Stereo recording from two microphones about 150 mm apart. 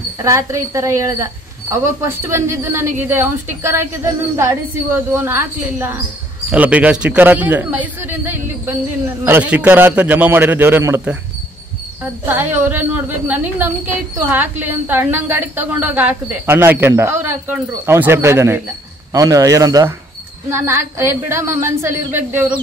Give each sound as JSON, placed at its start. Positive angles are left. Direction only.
{"t": 0.2, "sound": "a woman's voice", "side_deg": -20}